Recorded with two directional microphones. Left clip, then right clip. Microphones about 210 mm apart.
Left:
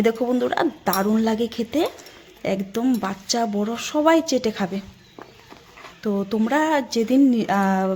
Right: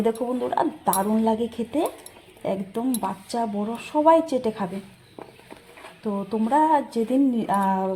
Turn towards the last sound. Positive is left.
turn(degrees=25)  # may be behind; listen again after turning